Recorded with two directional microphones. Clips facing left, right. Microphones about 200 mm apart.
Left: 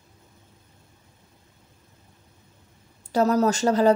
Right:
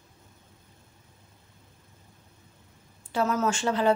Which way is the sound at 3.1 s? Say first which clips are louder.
Left 6 dB; 40° left (ahead or behind).